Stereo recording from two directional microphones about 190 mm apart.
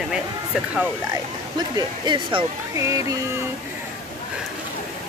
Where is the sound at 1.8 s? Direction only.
25° right (ahead or behind).